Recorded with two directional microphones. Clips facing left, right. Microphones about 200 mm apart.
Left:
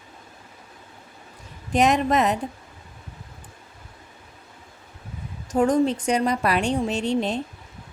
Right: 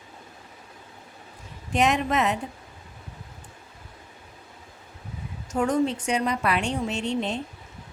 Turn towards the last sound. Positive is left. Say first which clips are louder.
# left 4 dB
turn(degrees=40)  # may be behind; listen again after turning